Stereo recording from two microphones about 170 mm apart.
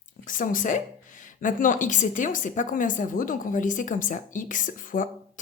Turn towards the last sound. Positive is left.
turn(degrees=50)  # may be behind; listen again after turning